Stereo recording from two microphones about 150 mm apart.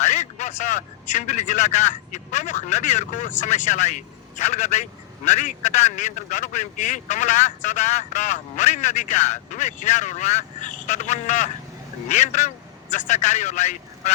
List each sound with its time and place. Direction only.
0.0 s a man's voice: 50° left (ahead or behind)